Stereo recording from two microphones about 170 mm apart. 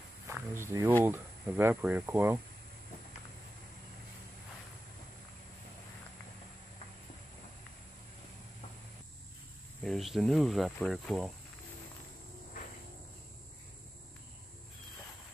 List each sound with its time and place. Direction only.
0.3 s speech: 15° right (ahead or behind)
9.8 s speech: centre (ahead or behind)